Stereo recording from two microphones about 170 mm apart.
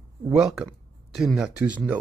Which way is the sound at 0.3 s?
5° right (ahead or behind).